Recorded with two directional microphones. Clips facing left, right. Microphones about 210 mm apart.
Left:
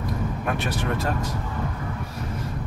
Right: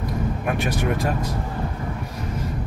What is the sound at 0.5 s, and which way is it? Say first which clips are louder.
Speech: right 3 dB; 15° right (ahead or behind).